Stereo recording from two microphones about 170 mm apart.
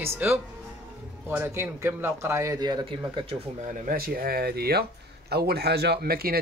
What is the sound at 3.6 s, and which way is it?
Speech, 50° right (ahead or behind).